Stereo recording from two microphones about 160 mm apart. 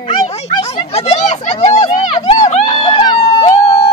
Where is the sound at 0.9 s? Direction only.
45° left (ahead or behind).